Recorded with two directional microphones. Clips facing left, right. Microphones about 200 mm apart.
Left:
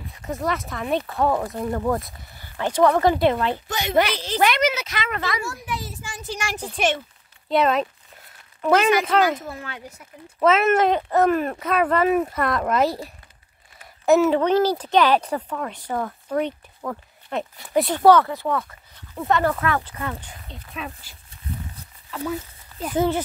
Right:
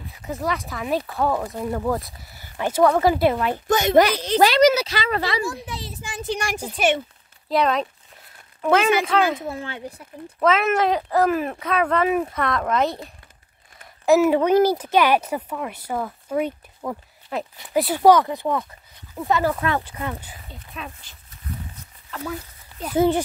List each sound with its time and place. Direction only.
0.3 s speech: centre (ahead or behind)
3.6 s a child's voice: 45° right (ahead or behind); by 5.4 s 30° right (ahead or behind)
5.6 s a sound: 30° right (ahead or behind)
6.5 s speech: 10° right (ahead or behind)
9.5 s speech: 25° right (ahead or behind)
10.4 s speech: 5° left (ahead or behind)
14.2 s speech: 10° right (ahead or behind)
19.1 s speech: centre (ahead or behind)
19.5 s speech: 20° right (ahead or behind)
20.2 s speech: 5° right (ahead or behind)
22.9 s speech: 15° right (ahead or behind)